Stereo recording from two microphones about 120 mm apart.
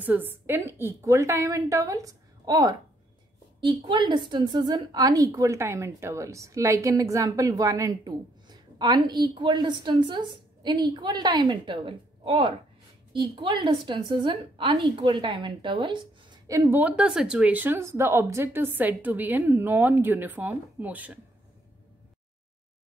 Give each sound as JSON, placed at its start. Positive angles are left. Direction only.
{"t": 0.0, "sound": "a woman's voice", "side_deg": -15}
{"t": 16.6, "sound": "a woman's voice", "side_deg": -15}